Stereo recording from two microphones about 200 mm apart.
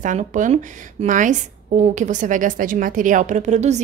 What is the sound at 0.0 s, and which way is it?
A woman's voice, 40° right (ahead or behind).